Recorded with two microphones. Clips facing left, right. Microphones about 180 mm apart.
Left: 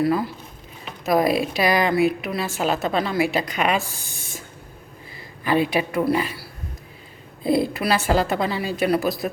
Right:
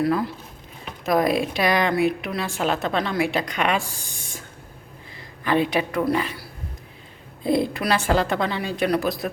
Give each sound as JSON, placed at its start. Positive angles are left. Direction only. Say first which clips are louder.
{"t": 0.0, "sound": "a woman's voice", "louder": "left 1 dB", "side_deg": 0}
{"t": 5.5, "sound": "speech", "louder": "left 1 dB", "side_deg": 5}
{"t": 7.4, "sound": "a woman's voice", "louder": "left 1 dB", "side_deg": 5}